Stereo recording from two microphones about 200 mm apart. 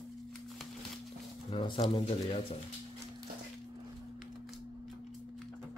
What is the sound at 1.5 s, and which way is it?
Speech, 25° left (ahead or behind).